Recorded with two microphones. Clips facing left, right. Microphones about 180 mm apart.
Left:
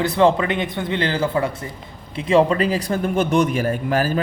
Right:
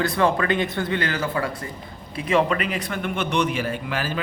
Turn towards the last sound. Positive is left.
turn(degrees=40)  # may be behind; listen again after turning